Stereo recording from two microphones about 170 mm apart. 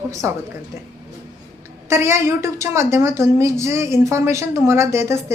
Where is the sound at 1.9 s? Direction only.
15° right (ahead or behind).